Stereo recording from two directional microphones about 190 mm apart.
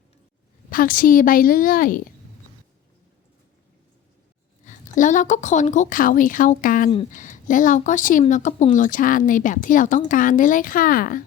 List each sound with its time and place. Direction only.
0.7 s speech: 45° left (ahead or behind)
4.6 s speech: 40° left (ahead or behind)